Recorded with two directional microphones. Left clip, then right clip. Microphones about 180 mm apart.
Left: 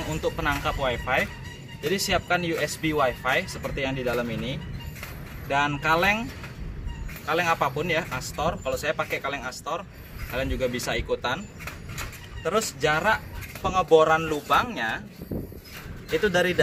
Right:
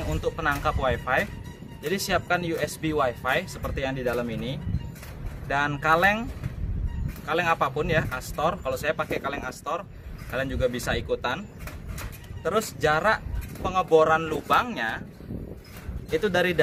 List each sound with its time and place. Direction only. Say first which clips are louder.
0.1 s speech: even; 5° right (ahead or behind)
5.5 s speech: even; 10° right (ahead or behind)
7.2 s speech: even; 5° right (ahead or behind)
12.4 s speech: even; 10° right (ahead or behind)
16.1 s speech: left 1 dB; 15° right (ahead or behind)